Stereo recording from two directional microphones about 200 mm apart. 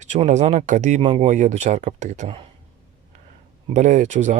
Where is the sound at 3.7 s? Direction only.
40° right (ahead or behind).